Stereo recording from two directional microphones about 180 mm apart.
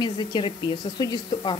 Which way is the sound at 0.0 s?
25° left (ahead or behind).